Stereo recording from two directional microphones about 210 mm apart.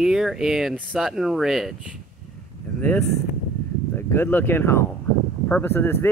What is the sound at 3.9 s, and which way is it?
Speech, 10° left (ahead or behind).